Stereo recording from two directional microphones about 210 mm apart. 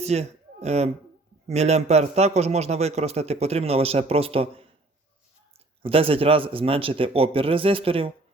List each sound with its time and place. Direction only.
0.0 s a man's voice: 30° right (ahead or behind)
5.8 s a man's voice: 25° right (ahead or behind)